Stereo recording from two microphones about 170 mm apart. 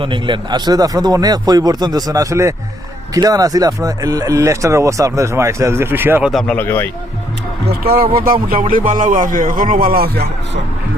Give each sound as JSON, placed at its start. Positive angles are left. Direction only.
{"t": 0.0, "sound": "speech", "side_deg": -30}
{"t": 6.3, "sound": "speech", "side_deg": 10}
{"t": 7.7, "sound": "a man's voice", "side_deg": -60}